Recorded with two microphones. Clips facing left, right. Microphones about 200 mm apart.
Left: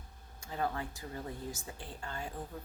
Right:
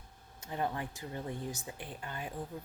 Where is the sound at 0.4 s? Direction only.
20° right (ahead or behind).